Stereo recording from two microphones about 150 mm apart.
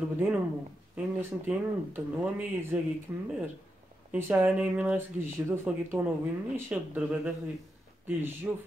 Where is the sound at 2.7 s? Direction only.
10° right (ahead or behind).